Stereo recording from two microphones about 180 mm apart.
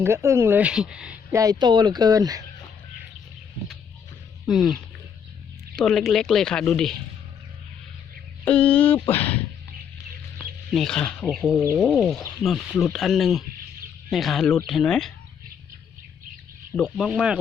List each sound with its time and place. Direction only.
0.0 s speech: 15° right (ahead or behind)
1.4 s speech: 20° right (ahead or behind)
4.4 s speech: centre (ahead or behind)
8.4 s speech: 10° left (ahead or behind)
10.7 s speech: 5° left (ahead or behind)
16.7 s speech: centre (ahead or behind)